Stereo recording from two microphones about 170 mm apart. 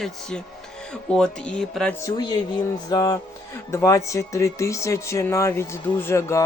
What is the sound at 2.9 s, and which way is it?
Speech, 20° left (ahead or behind).